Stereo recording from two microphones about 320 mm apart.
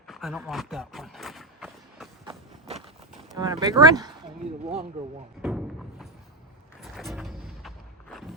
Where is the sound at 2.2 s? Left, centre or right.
Centre.